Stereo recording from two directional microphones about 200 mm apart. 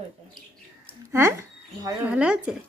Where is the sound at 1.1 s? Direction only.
15° right (ahead or behind).